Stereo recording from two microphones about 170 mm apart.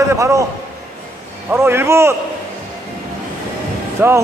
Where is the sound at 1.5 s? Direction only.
15° right (ahead or behind).